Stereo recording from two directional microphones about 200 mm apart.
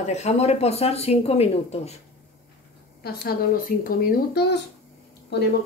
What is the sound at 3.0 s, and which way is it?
Speech, 50° left (ahead or behind).